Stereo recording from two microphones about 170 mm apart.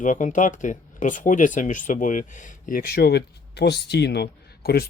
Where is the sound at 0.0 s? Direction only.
50° left (ahead or behind).